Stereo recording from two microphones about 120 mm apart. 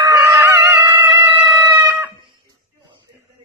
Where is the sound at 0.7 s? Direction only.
35° right (ahead or behind).